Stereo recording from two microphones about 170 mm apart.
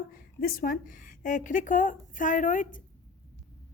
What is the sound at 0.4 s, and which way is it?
A woman's voice, 55° left (ahead or behind).